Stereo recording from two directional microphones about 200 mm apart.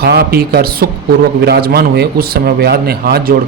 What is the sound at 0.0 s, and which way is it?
Speech, 50° right (ahead or behind).